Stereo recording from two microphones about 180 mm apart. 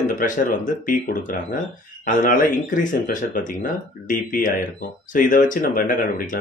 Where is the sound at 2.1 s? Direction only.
45° left (ahead or behind).